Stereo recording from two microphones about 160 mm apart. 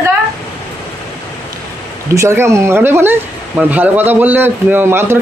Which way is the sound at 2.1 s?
15° right (ahead or behind).